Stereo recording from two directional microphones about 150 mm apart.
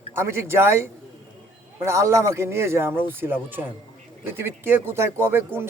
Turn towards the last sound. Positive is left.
turn(degrees=-15)  # may be behind; listen again after turning